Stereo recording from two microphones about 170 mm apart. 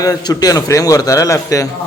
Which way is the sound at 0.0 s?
20° left (ahead or behind).